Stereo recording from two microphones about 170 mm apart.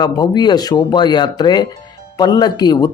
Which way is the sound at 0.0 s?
25° left (ahead or behind).